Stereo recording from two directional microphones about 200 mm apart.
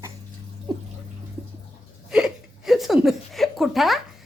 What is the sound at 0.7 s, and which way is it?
Speech, 20° right (ahead or behind).